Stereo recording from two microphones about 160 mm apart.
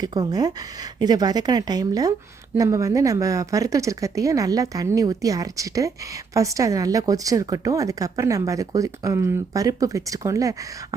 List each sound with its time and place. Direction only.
0.0 s a woman's voice: 25° right (ahead or behind)